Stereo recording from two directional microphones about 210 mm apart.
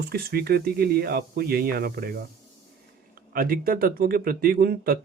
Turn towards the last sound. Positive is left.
turn(degrees=-45)  # may be behind; listen again after turning